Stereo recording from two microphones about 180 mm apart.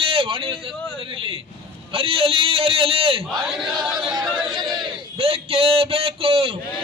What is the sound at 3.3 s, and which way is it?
Speech, centre (ahead or behind).